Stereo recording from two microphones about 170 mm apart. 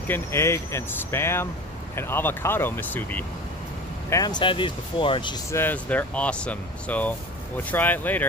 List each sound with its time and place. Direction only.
0.1 s speech: 15° left (ahead or behind)
4.1 s speech: 25° left (ahead or behind)
5.5 s speech: 10° left (ahead or behind)